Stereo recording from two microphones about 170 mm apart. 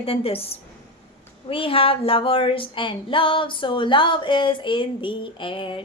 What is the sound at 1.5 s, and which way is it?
Female singing, 30° left (ahead or behind).